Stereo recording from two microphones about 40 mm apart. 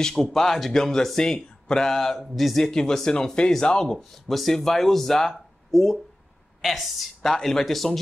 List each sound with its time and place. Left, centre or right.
0.0 s speech: centre
1.9 s a woman's voice: centre
2.6 s speech: centre
5.3 s a sound: centre
6.6 s a woman's voice: centre